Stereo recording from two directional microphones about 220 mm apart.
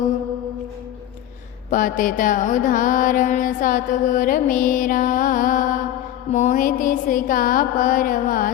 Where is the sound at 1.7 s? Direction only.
40° left (ahead or behind).